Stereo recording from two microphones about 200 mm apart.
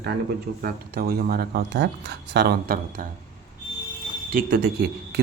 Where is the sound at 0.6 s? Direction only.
50° right (ahead or behind).